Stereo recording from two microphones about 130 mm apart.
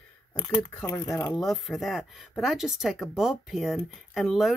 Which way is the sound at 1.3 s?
Centre (ahead or behind).